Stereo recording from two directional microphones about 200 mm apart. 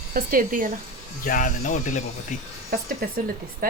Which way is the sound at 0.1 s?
45° right (ahead or behind).